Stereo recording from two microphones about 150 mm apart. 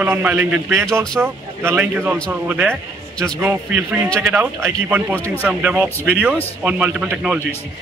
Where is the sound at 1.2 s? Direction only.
15° right (ahead or behind).